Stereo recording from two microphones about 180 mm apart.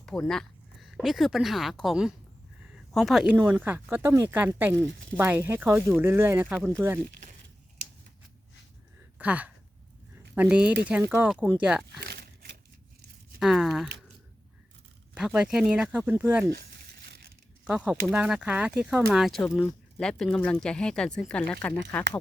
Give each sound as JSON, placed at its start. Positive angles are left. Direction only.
{"t": 0.0, "sound": "speech", "side_deg": 5}
{"t": 9.1, "sound": "speech", "side_deg": -10}
{"t": 11.9, "sound": "a sound", "side_deg": -65}
{"t": 13.4, "sound": "speech", "side_deg": 0}
{"t": 15.1, "sound": "speech", "side_deg": -5}
{"t": 16.5, "sound": "tearing", "side_deg": -60}
{"t": 17.7, "sound": "speech", "side_deg": -5}